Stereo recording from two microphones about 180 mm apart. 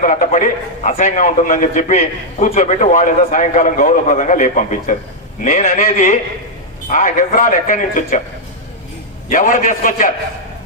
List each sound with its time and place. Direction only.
0.0 s a man's voice: 45° left (ahead or behind)
9.3 s a man's voice: 45° left (ahead or behind)